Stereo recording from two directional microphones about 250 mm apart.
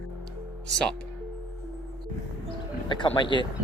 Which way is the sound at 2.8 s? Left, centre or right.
Centre.